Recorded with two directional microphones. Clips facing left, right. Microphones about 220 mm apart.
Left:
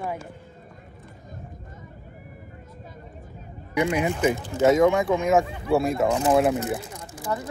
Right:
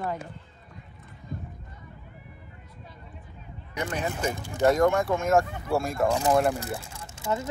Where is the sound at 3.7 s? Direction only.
10° left (ahead or behind).